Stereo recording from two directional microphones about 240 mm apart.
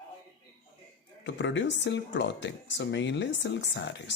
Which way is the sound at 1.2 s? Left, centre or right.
Left.